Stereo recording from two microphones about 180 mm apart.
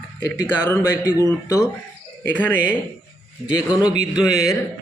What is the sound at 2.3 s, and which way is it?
Speech, 10° left (ahead or behind).